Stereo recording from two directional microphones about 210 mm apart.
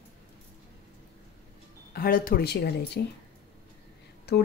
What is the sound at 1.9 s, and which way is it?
Speech, 45° left (ahead or behind).